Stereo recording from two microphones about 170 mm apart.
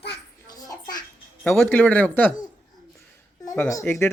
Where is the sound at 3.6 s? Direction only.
15° left (ahead or behind).